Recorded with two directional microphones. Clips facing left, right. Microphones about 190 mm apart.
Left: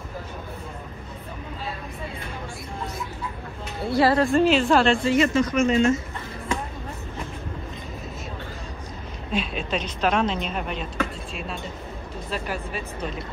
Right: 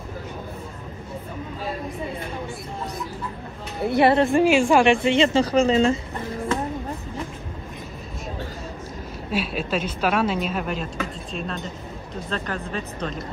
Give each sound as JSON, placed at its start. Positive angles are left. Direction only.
{"t": 3.9, "sound": "a woman's voice", "side_deg": -20}
{"t": 5.1, "sound": "a woman's voice", "side_deg": -30}
{"t": 9.3, "sound": "speech", "side_deg": -5}